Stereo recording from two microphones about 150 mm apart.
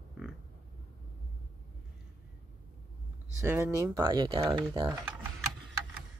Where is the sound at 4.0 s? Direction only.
30° right (ahead or behind).